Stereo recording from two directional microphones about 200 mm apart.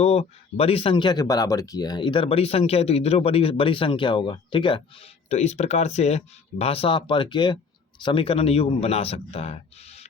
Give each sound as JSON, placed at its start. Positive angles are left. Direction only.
{"t": 0.0, "sound": "speech", "side_deg": 30}